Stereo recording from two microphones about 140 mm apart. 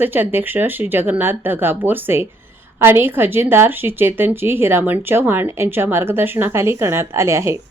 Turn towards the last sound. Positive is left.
turn(degrees=-20)  # may be behind; listen again after turning